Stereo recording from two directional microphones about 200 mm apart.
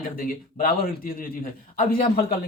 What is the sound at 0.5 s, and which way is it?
Speech, 45° left (ahead or behind).